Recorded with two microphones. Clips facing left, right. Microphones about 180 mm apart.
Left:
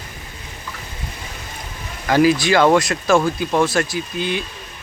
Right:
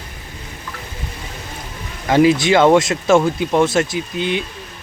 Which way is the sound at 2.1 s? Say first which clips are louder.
Right 2 dB; 25° right (ahead or behind).